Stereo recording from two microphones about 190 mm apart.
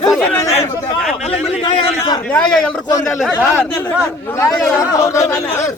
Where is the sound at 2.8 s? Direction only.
20° left (ahead or behind).